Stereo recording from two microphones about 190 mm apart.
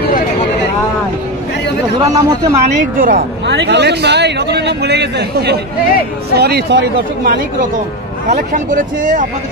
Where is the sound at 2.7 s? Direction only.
50° right (ahead or behind).